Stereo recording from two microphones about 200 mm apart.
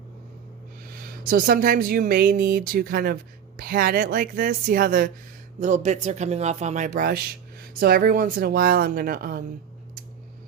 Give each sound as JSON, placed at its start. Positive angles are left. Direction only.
{"t": 1.2, "sound": "speech", "side_deg": -45}